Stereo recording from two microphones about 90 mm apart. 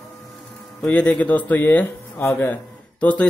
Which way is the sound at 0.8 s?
15° left (ahead or behind).